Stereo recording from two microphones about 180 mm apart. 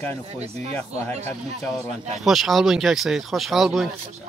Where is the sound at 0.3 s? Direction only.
35° right (ahead or behind).